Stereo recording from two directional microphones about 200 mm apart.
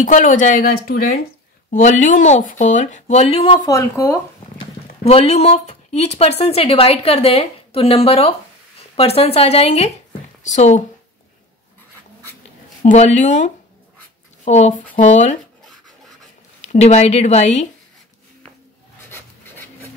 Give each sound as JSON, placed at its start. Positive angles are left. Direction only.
{"t": 0.0, "sound": "speech", "side_deg": 40}
{"t": 5.0, "sound": "speech", "side_deg": 30}
{"t": 12.8, "sound": "speech", "side_deg": 35}
{"t": 16.6, "sound": "speech", "side_deg": 35}